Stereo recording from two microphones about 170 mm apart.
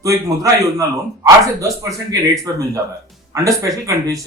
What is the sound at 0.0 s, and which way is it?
A man's voice, 20° right (ahead or behind).